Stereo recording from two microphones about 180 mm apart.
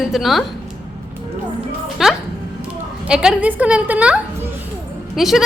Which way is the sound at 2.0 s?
Centre (ahead or behind).